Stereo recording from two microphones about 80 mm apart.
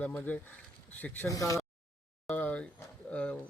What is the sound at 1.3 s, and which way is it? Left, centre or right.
Speech, left.